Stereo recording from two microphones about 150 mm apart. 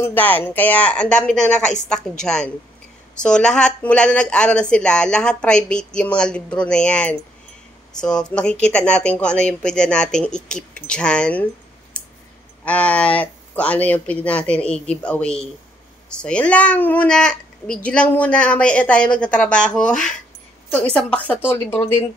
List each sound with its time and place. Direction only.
0.0 s a woman's voice: 10° left (ahead or behind)
1.6 s a woman's voice: 50° left (ahead or behind)
1.9 s a woman's voice: 5° left (ahead or behind)
11.9 s a sound: 5° left (ahead or behind)
12.6 s a woman's voice: 10° left (ahead or behind)